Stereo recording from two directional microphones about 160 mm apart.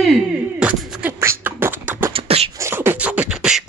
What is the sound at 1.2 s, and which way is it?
Beatboxing, 15° right (ahead or behind).